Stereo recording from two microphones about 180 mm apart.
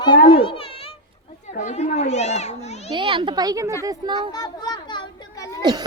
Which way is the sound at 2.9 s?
25° right (ahead or behind).